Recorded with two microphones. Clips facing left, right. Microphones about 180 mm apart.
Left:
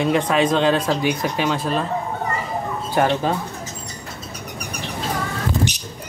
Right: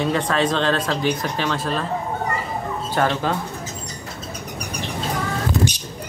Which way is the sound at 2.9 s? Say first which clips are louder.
Left 2 dB; 15° left (ahead or behind).